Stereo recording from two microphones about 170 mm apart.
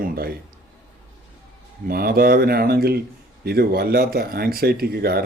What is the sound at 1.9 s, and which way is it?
Speech, 60° right (ahead or behind).